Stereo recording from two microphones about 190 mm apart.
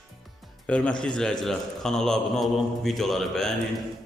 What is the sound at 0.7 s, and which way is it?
A man's voice, 5° left (ahead or behind).